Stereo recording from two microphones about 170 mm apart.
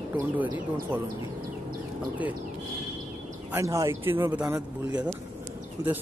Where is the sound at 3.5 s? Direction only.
15° right (ahead or behind).